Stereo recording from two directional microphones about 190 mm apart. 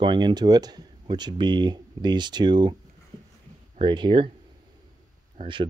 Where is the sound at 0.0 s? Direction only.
25° right (ahead or behind).